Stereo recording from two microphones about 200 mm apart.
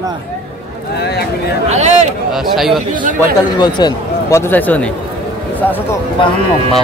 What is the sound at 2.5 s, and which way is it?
Speech, centre (ahead or behind).